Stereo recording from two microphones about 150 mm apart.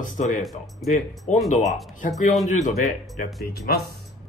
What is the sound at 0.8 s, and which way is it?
Speech, 50° left (ahead or behind).